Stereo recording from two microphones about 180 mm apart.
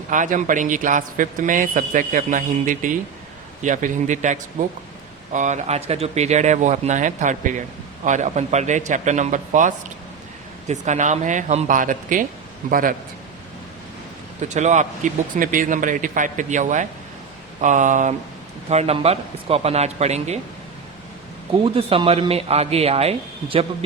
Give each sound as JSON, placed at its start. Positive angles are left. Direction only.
{"t": 0.1, "sound": "a man's voice", "side_deg": -45}
{"t": 14.5, "sound": "a man's voice", "side_deg": -40}
{"t": 21.6, "sound": "speech", "side_deg": -30}